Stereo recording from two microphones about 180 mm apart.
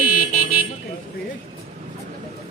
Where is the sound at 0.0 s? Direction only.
50° left (ahead or behind).